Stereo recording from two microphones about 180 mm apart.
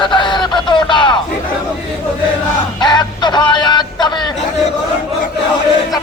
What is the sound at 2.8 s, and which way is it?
Music, 25° left (ahead or behind).